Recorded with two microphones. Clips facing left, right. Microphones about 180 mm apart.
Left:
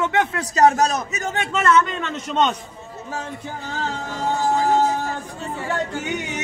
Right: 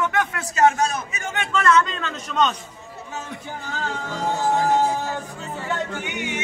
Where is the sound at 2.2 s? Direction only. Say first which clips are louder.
Left 1 dB; 25° left (ahead or behind).